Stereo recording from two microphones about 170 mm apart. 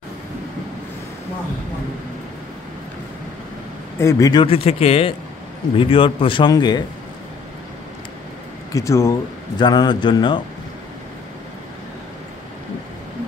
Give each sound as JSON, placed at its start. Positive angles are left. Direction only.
{"t": 4.0, "sound": "speech", "side_deg": 20}
{"t": 8.7, "sound": "speech", "side_deg": 15}